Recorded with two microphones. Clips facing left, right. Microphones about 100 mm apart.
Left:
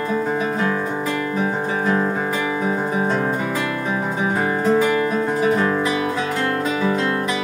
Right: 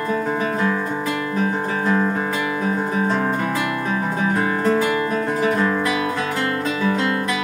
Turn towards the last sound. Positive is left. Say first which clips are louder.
# left 1 dB
turn(degrees=30)  # may be behind; listen again after turning